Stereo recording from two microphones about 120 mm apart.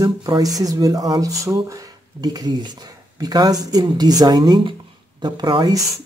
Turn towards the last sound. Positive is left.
turn(degrees=-35)  # may be behind; listen again after turning